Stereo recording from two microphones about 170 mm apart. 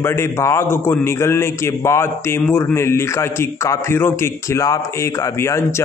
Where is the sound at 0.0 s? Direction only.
15° left (ahead or behind).